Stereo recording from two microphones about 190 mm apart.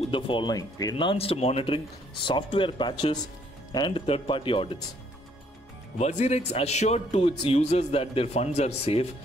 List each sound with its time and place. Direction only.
0.1 s speech: 25° left (ahead or behind)
5.9 s a man's voice: 35° left (ahead or behind)